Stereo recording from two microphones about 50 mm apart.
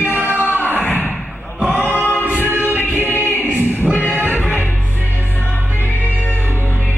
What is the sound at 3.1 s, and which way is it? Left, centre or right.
Music, left.